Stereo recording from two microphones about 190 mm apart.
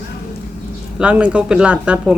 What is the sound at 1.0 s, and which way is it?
Speech, 5° right (ahead or behind).